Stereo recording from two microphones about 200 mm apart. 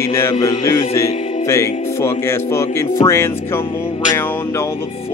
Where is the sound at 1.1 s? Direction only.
35° left (ahead or behind).